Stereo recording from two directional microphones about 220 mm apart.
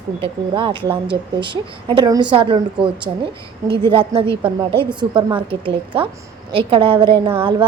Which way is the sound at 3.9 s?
25° right (ahead or behind).